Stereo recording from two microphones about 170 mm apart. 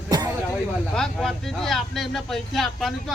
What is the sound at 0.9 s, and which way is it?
Speech, 5° left (ahead or behind).